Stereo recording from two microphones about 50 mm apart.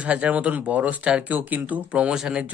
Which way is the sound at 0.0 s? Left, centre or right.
Right.